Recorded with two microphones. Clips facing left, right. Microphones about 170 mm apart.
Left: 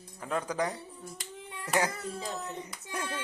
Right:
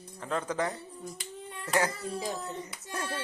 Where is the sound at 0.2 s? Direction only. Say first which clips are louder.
Even; 10° left (ahead or behind).